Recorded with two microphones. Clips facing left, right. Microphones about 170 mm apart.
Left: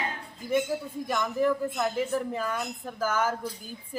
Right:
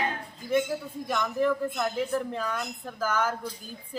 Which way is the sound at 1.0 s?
10° left (ahead or behind).